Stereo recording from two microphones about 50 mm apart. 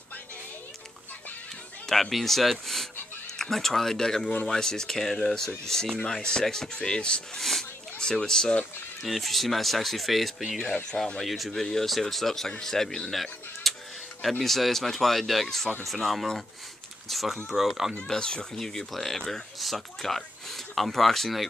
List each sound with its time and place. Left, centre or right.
1.9 s speech: centre
7.3 s a sound: centre
8.0 s speech: centre
9.0 s speech: centre
10.6 s speech: centre
13.1 s a sound: centre
14.4 s speech: centre
18.0 s speech: centre